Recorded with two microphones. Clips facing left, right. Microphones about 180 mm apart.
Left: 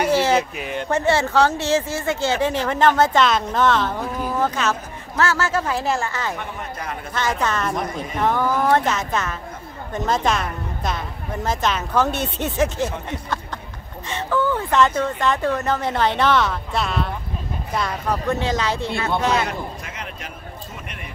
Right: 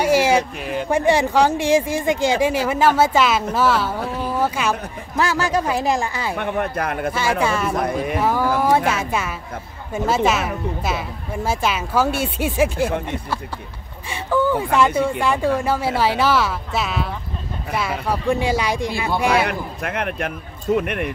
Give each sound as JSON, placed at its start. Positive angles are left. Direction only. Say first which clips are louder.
{"t": 0.0, "sound": "a sound", "louder": "right 2 dB", "side_deg": -10}
{"t": 0.4, "sound": "speech", "louder": "right 2 dB", "side_deg": 0}
{"t": 0.8, "sound": "speech", "louder": "right 2 dB", "side_deg": -15}
{"t": 6.3, "sound": "speech", "louder": "right 8 dB", "side_deg": -65}
{"t": 7.2, "sound": "speech", "louder": "right 1 dB", "side_deg": -10}
{"t": 14.0, "sound": "speech", "louder": "right 2 dB", "side_deg": -10}
{"t": 19.4, "sound": "speech", "louder": "right 3 dB", "side_deg": -60}